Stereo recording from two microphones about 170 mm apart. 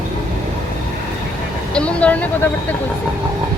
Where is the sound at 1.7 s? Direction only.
5° left (ahead or behind).